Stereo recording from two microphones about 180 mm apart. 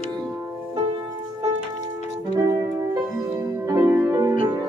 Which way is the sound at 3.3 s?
20° right (ahead or behind).